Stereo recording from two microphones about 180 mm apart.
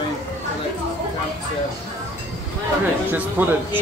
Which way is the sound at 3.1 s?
10° right (ahead or behind).